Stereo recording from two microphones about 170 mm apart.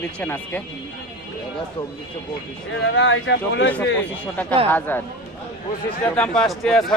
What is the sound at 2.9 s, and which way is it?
Speech, 90° left.